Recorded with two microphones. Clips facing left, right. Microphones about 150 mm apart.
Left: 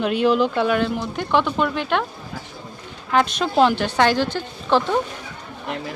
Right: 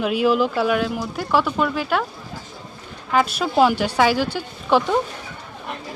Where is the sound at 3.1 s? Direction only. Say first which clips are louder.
Even; 5° right (ahead or behind).